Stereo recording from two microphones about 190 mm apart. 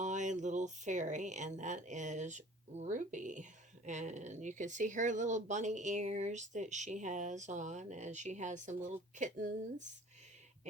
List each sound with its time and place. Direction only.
0.0 s speech: 40° right (ahead or behind)